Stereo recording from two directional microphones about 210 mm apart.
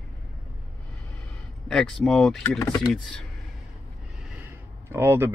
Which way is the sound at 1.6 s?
Centre (ahead or behind).